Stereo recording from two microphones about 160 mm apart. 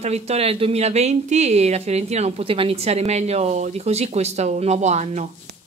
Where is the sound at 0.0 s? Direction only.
40° right (ahead or behind).